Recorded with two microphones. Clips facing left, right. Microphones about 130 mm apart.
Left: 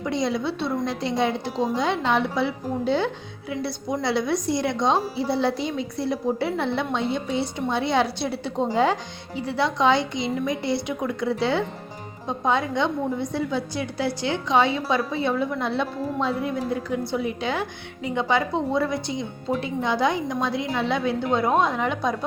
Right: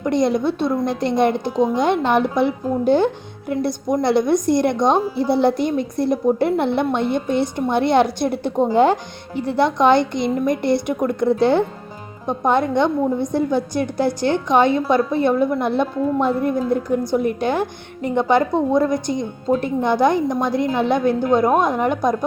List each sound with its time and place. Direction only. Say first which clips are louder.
0.0 s a woman's voice: right 7 dB; 55° right (ahead or behind)